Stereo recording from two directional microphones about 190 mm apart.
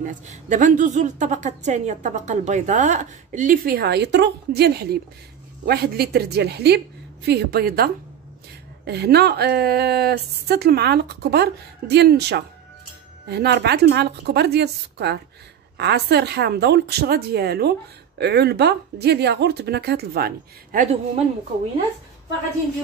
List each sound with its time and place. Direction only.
0.0 s a woman's voice: 40° right (ahead or behind)